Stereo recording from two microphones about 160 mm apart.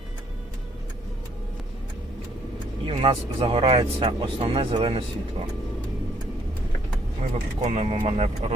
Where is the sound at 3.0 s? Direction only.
35° right (ahead or behind).